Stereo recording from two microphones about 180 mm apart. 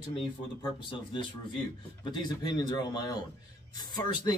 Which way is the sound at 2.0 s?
25° left (ahead or behind).